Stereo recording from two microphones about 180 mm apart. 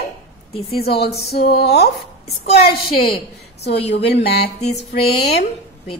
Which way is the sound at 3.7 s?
70° left (ahead or behind).